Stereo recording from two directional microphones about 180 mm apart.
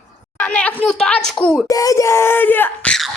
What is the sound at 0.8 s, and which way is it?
Speech, 5° left (ahead or behind).